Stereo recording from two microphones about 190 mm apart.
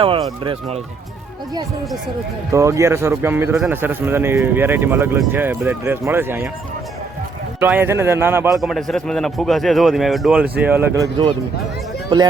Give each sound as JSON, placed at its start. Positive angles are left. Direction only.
{"t": 0.0, "sound": "speech", "side_deg": -25}
{"t": 2.5, "sound": "speech", "side_deg": -15}
{"t": 7.6, "sound": "speech", "side_deg": -10}
{"t": 8.4, "sound": "a man's voice", "side_deg": 0}